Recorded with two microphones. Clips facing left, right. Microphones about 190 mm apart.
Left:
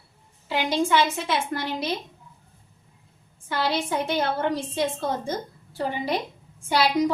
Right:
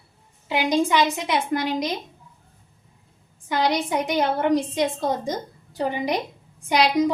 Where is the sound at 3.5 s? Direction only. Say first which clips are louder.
Right 3 dB; 15° right (ahead or behind).